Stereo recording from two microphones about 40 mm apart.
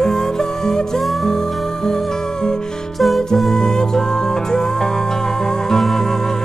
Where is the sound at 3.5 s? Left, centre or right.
Centre.